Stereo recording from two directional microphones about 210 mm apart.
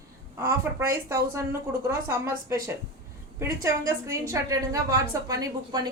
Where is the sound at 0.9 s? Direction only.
15° right (ahead or behind).